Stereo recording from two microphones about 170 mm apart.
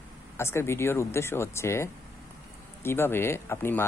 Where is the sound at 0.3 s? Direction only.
15° left (ahead or behind).